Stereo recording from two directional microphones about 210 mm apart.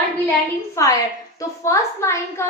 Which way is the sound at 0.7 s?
15° left (ahead or behind).